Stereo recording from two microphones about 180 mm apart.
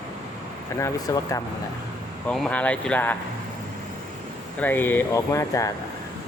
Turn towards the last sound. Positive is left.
turn(degrees=15)  # may be behind; listen again after turning